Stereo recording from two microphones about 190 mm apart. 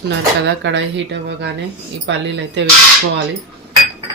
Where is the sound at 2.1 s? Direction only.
70° right (ahead or behind).